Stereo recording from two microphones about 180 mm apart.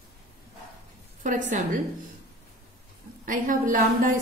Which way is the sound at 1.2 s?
45° right (ahead or behind).